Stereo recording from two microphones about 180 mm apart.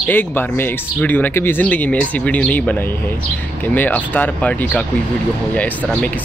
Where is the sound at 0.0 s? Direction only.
10° left (ahead or behind).